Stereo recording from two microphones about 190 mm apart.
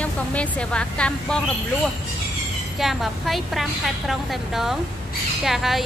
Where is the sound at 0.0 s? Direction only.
5° left (ahead or behind).